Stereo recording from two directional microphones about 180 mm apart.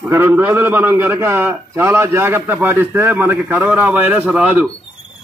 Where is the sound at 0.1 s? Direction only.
15° right (ahead or behind).